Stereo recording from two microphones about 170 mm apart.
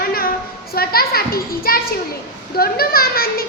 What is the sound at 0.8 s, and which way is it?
Speech, 65° left (ahead or behind).